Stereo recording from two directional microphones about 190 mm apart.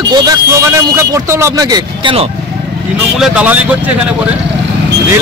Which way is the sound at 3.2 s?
5° right (ahead or behind).